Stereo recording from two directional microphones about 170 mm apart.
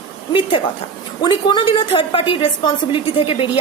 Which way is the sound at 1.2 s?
25° left (ahead or behind).